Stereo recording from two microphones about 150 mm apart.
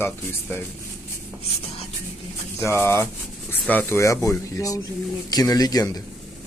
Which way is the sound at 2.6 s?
15° left (ahead or behind).